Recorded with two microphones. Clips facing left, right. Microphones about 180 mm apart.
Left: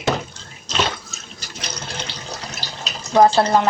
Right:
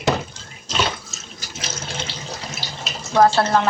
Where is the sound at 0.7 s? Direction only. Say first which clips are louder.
Left 1 dB; centre (ahead or behind).